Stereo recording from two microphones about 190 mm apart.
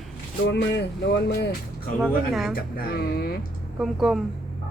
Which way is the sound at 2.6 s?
55° left (ahead or behind).